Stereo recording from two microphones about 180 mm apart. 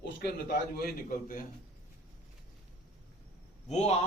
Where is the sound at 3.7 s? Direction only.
40° left (ahead or behind).